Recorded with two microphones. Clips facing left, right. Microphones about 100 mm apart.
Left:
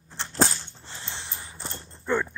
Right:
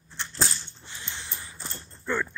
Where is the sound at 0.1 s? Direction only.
40° left (ahead or behind).